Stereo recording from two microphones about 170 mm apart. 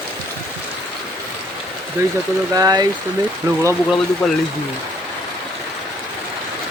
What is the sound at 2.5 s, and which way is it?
Speech, 20° right (ahead or behind).